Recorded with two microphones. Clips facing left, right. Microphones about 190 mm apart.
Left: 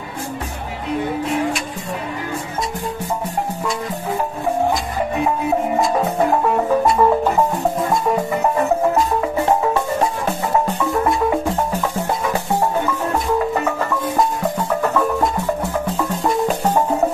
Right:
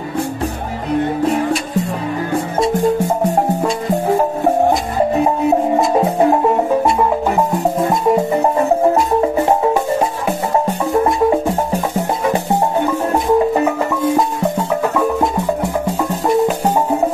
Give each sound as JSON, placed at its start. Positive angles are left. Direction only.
{"t": 4.6, "sound": "music", "side_deg": -40}
{"t": 5.8, "sound": "music", "side_deg": -30}
{"t": 10.8, "sound": "music", "side_deg": -30}
{"t": 13.1, "sound": "music", "side_deg": -25}
{"t": 15.0, "sound": "music", "side_deg": -15}